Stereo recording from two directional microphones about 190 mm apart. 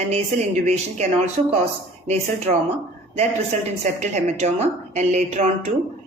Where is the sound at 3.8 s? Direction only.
40° right (ahead or behind).